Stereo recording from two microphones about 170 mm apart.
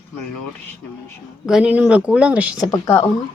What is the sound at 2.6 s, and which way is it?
Speech, 20° left (ahead or behind).